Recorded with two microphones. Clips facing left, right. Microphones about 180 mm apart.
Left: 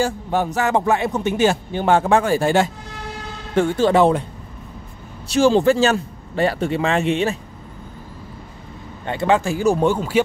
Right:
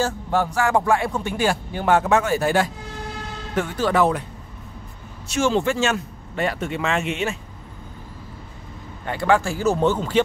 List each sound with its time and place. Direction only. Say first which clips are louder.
0.0 s speech: left 2 dB; 20° left (ahead or behind)
5.3 s a man's voice: left 6 dB; 35° left (ahead or behind)
9.0 s speech: left 2 dB; 25° left (ahead or behind)